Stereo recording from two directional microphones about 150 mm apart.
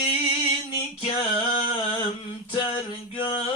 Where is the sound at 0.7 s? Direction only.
35° left (ahead or behind).